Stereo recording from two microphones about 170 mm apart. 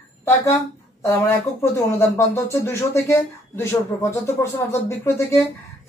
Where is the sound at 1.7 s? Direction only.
15° left (ahead or behind).